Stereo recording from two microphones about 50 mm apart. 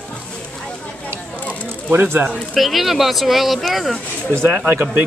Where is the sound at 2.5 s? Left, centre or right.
Centre.